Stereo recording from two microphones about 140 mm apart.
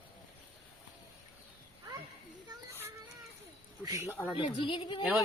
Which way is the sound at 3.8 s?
20° right (ahead or behind).